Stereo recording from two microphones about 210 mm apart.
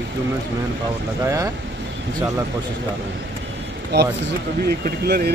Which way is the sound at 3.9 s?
50° right (ahead or behind).